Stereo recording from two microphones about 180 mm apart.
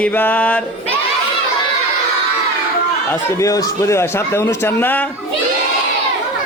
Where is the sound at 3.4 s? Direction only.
20° left (ahead or behind).